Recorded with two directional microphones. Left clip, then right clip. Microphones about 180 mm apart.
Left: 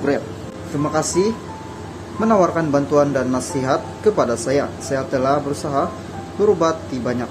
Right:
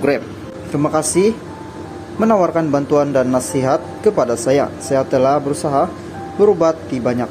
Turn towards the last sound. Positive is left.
turn(degrees=-25)  # may be behind; listen again after turning